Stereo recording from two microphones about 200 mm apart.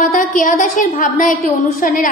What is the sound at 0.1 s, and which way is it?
A woman's voice, 40° left (ahead or behind).